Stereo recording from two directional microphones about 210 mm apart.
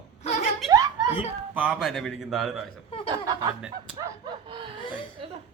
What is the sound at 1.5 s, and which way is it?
Speech, 5° right (ahead or behind).